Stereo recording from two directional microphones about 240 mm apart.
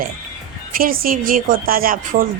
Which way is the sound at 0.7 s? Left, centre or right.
Right.